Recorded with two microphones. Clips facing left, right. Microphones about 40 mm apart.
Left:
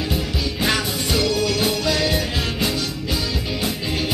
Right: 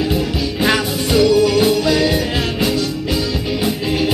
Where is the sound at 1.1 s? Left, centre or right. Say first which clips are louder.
Right 9 dB; centre.